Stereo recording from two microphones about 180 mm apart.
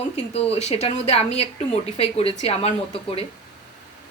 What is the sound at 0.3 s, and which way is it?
Speech, 35° left (ahead or behind).